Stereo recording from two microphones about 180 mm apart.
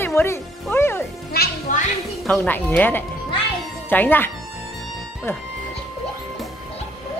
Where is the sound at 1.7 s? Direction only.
45° left (ahead or behind).